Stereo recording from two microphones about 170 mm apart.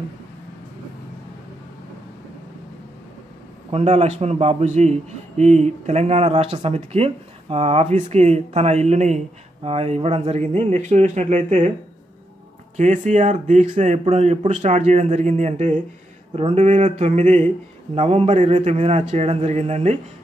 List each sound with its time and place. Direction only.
3.7 s speech: 35° right (ahead or behind)
12.7 s speech: 45° right (ahead or behind)